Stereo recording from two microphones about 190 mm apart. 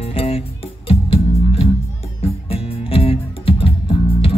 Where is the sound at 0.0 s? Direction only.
30° left (ahead or behind).